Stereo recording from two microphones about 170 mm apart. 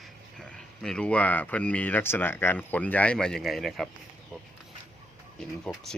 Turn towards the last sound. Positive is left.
turn(degrees=0)  # may be behind; listen again after turning